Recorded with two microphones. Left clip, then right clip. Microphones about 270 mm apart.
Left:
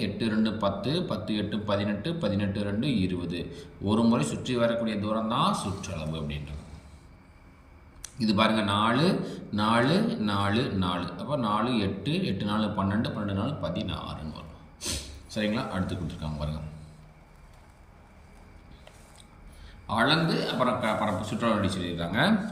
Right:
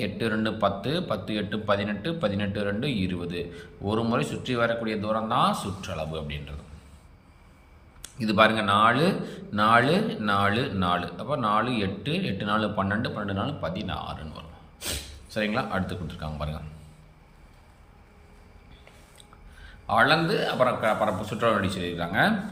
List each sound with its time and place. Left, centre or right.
0.0 s a man's voice: centre
8.2 s a man's voice: centre
19.6 s a man's voice: centre